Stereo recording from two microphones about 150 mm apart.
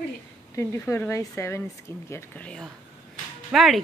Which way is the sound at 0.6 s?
15° left (ahead or behind).